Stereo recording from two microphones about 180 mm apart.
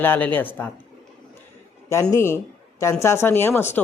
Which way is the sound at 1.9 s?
15° left (ahead or behind).